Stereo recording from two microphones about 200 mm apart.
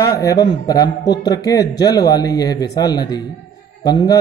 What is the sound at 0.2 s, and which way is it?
A man's voice, 15° left (ahead or behind).